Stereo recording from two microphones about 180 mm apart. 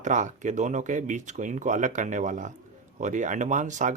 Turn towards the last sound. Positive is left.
turn(degrees=-45)  # may be behind; listen again after turning